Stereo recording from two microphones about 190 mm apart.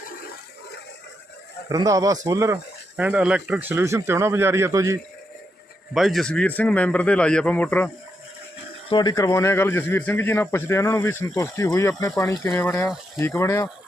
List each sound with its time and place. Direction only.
1.7 s speech: 20° right (ahead or behind)
5.9 s a man's voice: centre (ahead or behind)
8.9 s a man's voice: 20° left (ahead or behind)